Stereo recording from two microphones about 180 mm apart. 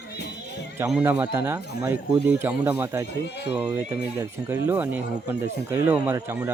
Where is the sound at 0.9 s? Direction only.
10° right (ahead or behind).